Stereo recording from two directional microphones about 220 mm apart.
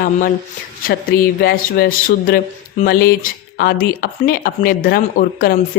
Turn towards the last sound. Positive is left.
turn(degrees=45)  # may be behind; listen again after turning